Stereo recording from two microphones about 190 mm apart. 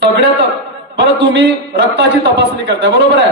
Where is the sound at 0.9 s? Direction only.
65° right (ahead or behind).